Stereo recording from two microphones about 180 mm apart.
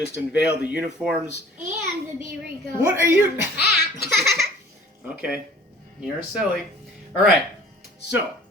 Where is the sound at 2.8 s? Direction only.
15° right (ahead or behind).